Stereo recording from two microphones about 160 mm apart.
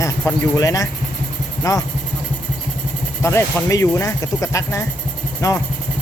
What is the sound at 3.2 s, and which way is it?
Speech, 15° left (ahead or behind).